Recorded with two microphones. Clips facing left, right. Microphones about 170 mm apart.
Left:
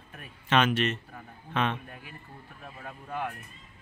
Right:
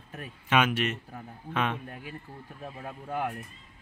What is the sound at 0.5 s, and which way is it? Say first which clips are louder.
A man's voice: left 1 dB; 10° right (ahead or behind).